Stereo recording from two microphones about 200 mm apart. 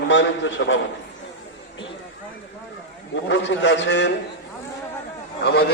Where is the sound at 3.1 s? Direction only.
65° left (ahead or behind).